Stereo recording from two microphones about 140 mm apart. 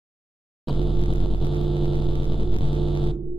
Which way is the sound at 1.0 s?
40° left (ahead or behind).